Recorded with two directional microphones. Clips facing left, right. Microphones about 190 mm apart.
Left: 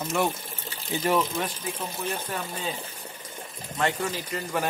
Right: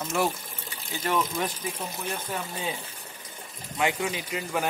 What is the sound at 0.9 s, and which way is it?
Speech, 15° left (ahead or behind).